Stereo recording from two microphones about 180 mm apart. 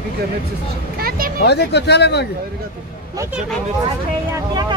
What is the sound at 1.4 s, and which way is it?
Speech, 70° left (ahead or behind).